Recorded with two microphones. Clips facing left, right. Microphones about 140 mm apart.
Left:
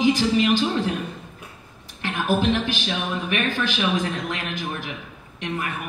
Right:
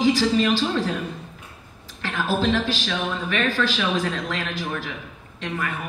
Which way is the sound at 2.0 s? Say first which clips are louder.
Left 1 dB; 15° left (ahead or behind).